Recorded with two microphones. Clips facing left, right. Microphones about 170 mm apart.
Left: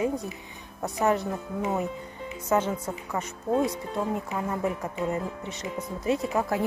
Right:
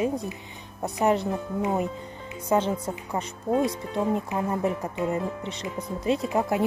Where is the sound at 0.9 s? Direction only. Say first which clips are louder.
Right 2 dB; 15° right (ahead or behind).